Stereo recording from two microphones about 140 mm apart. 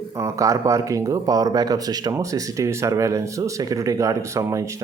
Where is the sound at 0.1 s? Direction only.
20° right (ahead or behind).